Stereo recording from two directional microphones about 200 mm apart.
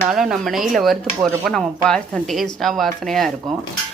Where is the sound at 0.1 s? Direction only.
Centre (ahead or behind).